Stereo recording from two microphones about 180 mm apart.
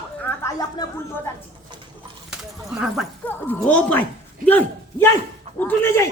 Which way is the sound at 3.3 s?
10° left (ahead or behind).